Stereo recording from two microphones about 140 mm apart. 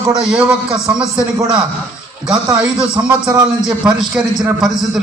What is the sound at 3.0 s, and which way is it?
Speech, 20° right (ahead or behind).